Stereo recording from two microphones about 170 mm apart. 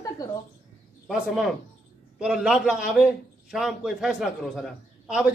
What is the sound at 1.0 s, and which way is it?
A man's voice, centre (ahead or behind).